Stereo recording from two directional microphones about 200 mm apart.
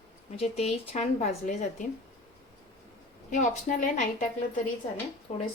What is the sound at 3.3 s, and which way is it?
Speech, 40° left (ahead or behind).